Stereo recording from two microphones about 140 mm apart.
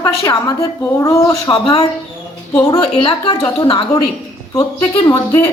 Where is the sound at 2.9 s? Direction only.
40° left (ahead or behind).